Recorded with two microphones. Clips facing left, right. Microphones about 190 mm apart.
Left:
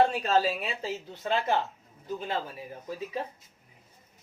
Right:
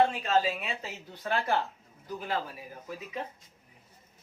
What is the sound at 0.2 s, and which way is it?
Speech, 35° left (ahead or behind).